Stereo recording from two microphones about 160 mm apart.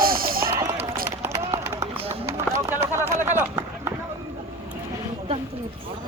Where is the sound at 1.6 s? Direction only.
15° right (ahead or behind).